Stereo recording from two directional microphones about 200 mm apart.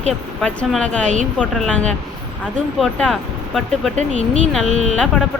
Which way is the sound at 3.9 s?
35° right (ahead or behind).